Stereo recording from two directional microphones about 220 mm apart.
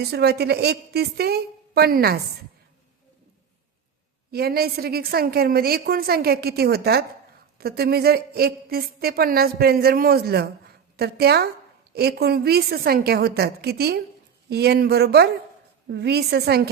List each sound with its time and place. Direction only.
0.0 s a woman's voice: 45° right (ahead or behind)
4.3 s a woman's voice: 45° right (ahead or behind)